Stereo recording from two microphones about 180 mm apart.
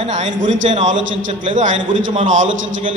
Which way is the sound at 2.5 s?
90° right.